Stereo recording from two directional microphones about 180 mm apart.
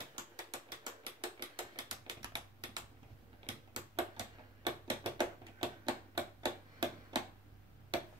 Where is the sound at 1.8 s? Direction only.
25° right (ahead or behind).